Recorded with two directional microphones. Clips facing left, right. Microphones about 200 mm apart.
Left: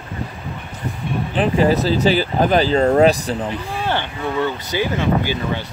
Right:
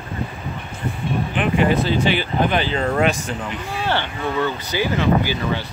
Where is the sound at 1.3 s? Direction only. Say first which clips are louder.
Left 3 dB; 35° left (ahead or behind).